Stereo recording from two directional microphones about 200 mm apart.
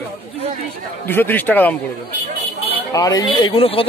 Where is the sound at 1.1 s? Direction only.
10° left (ahead or behind).